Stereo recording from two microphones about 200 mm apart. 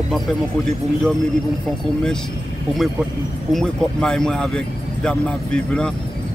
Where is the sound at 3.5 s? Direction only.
Centre (ahead or behind).